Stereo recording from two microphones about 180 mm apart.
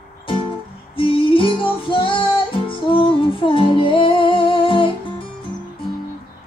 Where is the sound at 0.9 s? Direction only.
30° left (ahead or behind).